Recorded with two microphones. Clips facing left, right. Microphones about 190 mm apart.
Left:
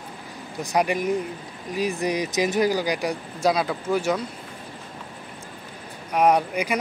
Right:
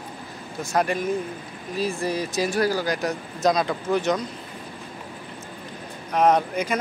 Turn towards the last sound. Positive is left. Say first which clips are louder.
# even
turn(degrees=10)  # may be behind; listen again after turning